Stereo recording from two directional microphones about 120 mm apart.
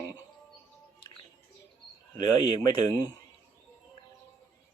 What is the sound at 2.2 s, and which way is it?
Speech, 35° left (ahead or behind).